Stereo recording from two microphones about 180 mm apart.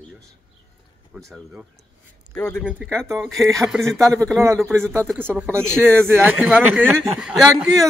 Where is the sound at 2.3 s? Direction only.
10° left (ahead or behind).